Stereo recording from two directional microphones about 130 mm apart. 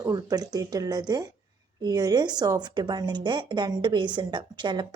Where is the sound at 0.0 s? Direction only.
25° right (ahead or behind).